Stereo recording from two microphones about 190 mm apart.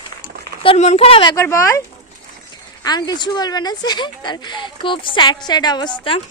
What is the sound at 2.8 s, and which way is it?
Speech, 20° left (ahead or behind).